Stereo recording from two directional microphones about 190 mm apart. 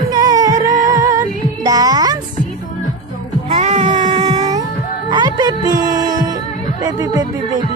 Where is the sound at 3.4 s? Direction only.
40° right (ahead or behind).